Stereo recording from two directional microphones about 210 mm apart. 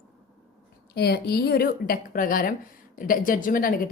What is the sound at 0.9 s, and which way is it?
A woman's voice, 50° left (ahead or behind).